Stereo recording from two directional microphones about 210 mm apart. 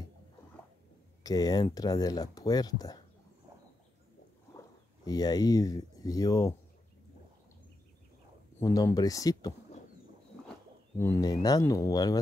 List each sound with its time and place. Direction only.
1.2 s speech: 20° left (ahead or behind)
4.6 s speech: 20° left (ahead or behind)
8.5 s speech: 15° left (ahead or behind)
11.0 s speech: 15° left (ahead or behind)